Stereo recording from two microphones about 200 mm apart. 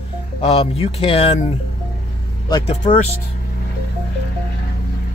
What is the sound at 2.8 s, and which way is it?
Speech, 35° left (ahead or behind).